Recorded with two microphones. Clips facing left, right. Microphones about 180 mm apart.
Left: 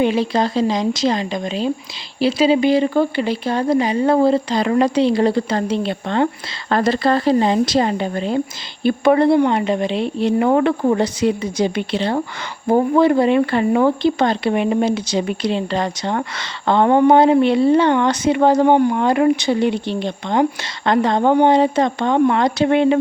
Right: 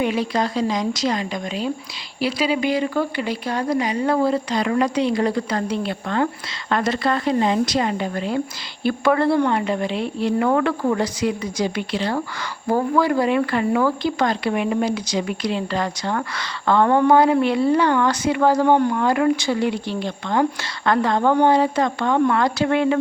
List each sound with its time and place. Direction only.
0.0 s speech: 30° left (ahead or behind)